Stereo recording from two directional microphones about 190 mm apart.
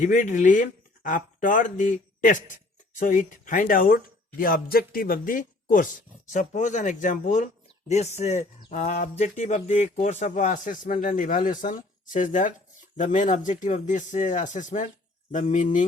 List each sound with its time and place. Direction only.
0.0 s speech: 40° left (ahead or behind)